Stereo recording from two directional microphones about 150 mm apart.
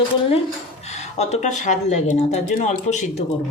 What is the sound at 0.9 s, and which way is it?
Speech, 45° left (ahead or behind).